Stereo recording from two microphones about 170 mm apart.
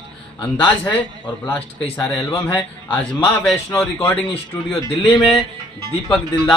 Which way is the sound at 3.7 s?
15° left (ahead or behind).